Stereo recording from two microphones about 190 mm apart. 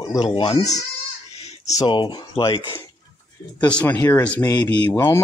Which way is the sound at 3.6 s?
10° left (ahead or behind).